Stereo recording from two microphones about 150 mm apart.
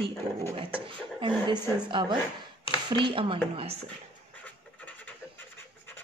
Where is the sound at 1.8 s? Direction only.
30° right (ahead or behind).